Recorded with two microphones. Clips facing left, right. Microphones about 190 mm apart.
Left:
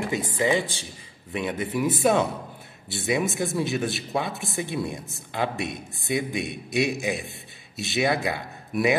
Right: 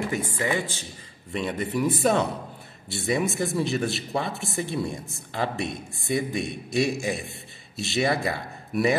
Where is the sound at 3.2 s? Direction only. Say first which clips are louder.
Even; centre (ahead or behind).